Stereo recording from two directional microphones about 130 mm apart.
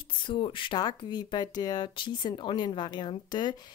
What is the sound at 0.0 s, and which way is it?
Speech, 40° left (ahead or behind).